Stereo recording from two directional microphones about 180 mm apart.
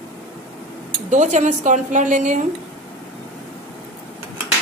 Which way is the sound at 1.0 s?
40° right (ahead or behind).